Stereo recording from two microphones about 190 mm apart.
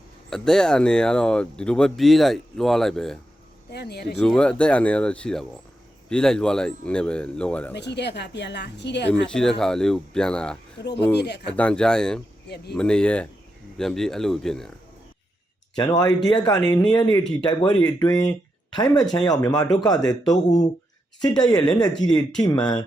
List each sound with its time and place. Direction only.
0.3 s speech: 5° left (ahead or behind)
3.7 s a woman's voice: 60° left (ahead or behind)
4.2 s speech: 5° left (ahead or behind)
7.7 s a woman's voice: 65° left (ahead or behind)
9.2 s speech: 5° left (ahead or behind)
15.7 s speech: 20° left (ahead or behind)
20.3 s speech: 40° left (ahead or behind)
21.2 s speech: 20° left (ahead or behind)